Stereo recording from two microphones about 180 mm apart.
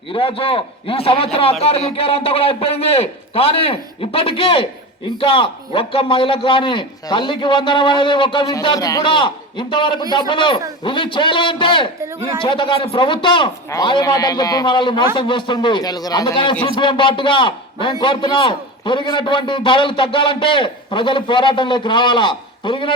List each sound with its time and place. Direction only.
0.1 s a man's voice: 30° left (ahead or behind)